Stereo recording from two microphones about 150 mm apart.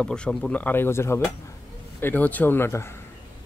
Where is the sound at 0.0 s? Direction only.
5° left (ahead or behind).